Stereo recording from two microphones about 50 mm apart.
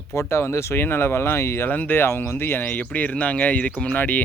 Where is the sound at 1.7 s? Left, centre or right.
Left.